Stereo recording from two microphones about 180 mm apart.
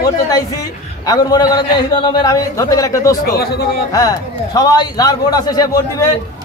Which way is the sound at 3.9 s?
20° left (ahead or behind).